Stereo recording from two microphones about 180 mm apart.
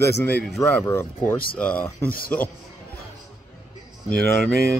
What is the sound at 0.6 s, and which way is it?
Speech, 15° left (ahead or behind).